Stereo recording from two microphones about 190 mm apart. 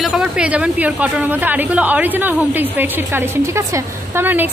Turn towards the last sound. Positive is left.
turn(degrees=-10)  # may be behind; listen again after turning